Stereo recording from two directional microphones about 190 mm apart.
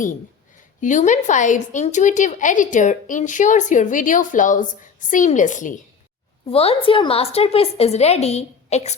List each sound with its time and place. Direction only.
0.8 s a woman's voice: 40° left (ahead or behind)
6.4 s a woman's voice: 30° left (ahead or behind)